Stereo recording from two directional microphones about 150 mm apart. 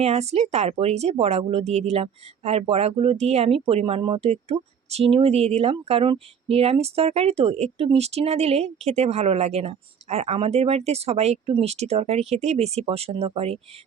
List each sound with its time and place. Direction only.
0.0 s speech: 45° right (ahead or behind)